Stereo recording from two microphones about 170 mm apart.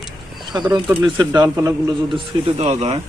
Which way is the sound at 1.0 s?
25° right (ahead or behind).